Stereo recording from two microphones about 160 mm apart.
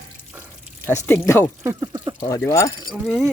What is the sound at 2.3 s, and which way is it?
Speech, 20° left (ahead or behind).